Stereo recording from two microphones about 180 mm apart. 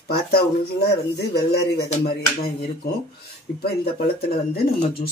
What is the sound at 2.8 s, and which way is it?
Speech, 60° left (ahead or behind).